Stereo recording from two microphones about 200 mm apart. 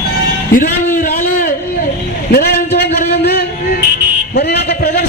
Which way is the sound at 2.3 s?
50° left (ahead or behind).